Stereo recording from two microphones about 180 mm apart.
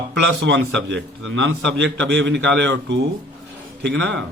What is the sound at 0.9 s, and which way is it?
A man's voice, 85° right.